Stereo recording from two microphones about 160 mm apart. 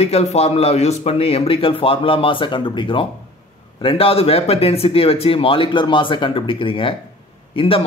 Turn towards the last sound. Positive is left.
turn(degrees=35)  # may be behind; listen again after turning